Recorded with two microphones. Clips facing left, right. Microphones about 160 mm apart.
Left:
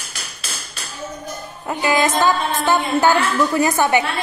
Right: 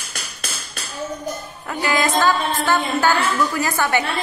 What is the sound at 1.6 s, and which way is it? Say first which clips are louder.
A woman's voice: left 3 dB; 20° left (ahead or behind).